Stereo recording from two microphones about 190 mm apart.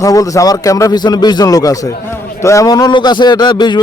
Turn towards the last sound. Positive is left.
turn(degrees=25)  # may be behind; listen again after turning